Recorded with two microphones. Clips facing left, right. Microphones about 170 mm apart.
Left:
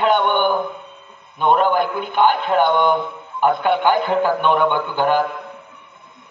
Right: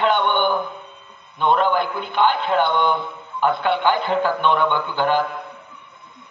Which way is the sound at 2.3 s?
10° left (ahead or behind).